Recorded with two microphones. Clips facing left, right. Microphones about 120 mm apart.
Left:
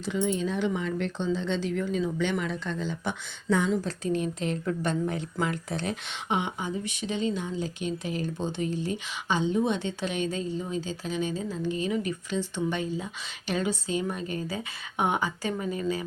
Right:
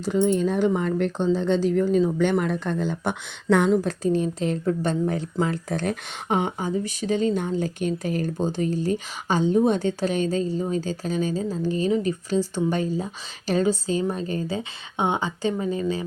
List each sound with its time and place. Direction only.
0.0 s speech: 45° right (ahead or behind)
4.0 s speech: 35° right (ahead or behind)
5.8 s a woman's voice: 45° right (ahead or behind); by 16.0 s 30° right (ahead or behind)